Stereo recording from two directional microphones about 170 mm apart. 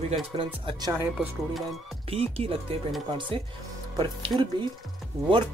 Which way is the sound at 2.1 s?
35° right (ahead or behind).